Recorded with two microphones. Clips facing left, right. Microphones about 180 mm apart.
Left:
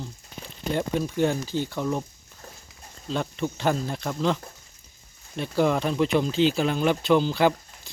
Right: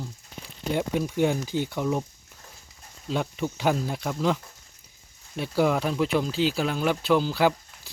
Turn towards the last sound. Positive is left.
turn(degrees=-5)  # may be behind; listen again after turning